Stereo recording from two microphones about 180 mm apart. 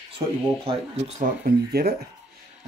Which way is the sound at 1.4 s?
60° right (ahead or behind).